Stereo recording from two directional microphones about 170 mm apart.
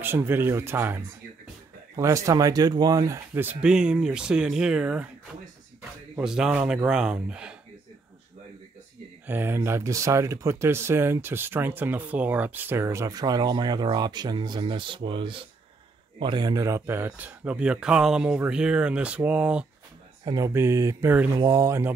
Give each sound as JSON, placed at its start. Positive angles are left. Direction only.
{"t": 0.0, "sound": "speech", "side_deg": -15}
{"t": 6.1, "sound": "speech", "side_deg": -5}
{"t": 9.3, "sound": "speech", "side_deg": -15}
{"t": 20.2, "sound": "speech", "side_deg": -20}